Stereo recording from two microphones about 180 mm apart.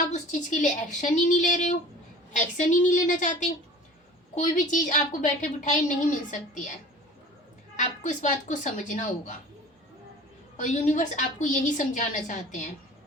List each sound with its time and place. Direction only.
0.1 s a woman's voice: 45° left (ahead or behind)
7.8 s a woman's voice: 45° left (ahead or behind)
10.6 s a woman's voice: 40° left (ahead or behind)